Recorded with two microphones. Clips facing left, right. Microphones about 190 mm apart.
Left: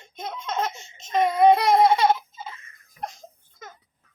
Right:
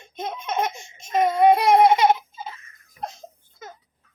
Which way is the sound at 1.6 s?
20° right (ahead or behind).